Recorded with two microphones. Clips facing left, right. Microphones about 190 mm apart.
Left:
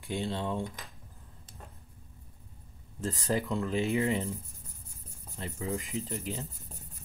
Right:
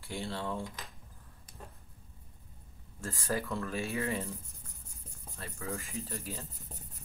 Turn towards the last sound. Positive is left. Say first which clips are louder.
# left 5 dB
turn(degrees=20)  # may be behind; listen again after turning